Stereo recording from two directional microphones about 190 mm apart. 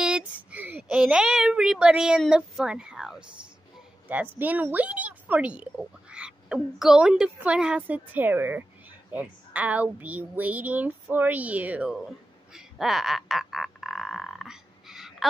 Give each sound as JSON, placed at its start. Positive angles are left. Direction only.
{"t": 0.0, "sound": "a woman's voice", "side_deg": -5}
{"t": 12.5, "sound": "frog", "side_deg": 0}